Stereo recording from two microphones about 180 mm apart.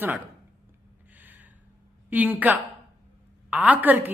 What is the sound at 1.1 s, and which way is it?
Gasp, 10° right (ahead or behind).